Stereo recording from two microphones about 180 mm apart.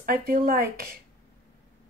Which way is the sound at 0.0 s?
55° right (ahead or behind).